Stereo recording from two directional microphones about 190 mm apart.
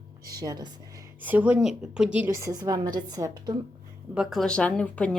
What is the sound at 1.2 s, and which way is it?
A woman's voice, 10° right (ahead or behind).